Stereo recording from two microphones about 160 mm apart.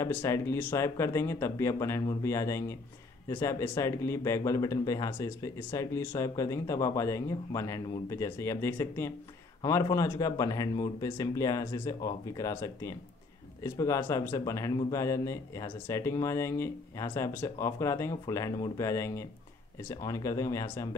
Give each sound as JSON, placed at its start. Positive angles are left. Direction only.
{"t": 0.0, "sound": "speech", "side_deg": 15}